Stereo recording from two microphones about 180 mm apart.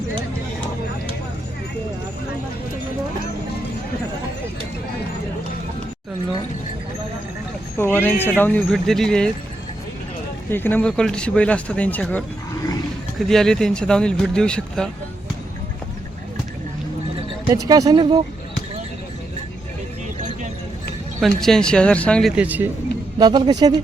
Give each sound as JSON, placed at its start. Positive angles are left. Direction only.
{"t": 7.8, "sound": "speech", "side_deg": 10}
{"t": 10.5, "sound": "speech", "side_deg": 10}
{"t": 17.4, "sound": "speech", "side_deg": -20}
{"t": 21.2, "sound": "speech", "side_deg": 0}
{"t": 22.4, "sound": "speech", "side_deg": -10}
{"t": 23.1, "sound": "speech", "side_deg": -25}